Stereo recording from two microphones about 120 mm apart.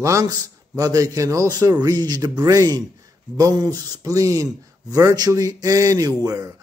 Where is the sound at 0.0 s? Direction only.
30° right (ahead or behind).